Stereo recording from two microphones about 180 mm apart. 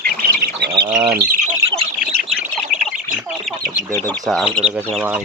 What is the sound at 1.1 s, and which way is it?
Speech, 55° right (ahead or behind).